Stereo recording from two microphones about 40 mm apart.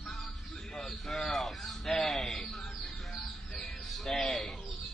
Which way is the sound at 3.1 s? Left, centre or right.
Centre.